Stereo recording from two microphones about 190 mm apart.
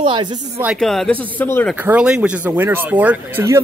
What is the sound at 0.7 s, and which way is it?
A man's voice, centre (ahead or behind).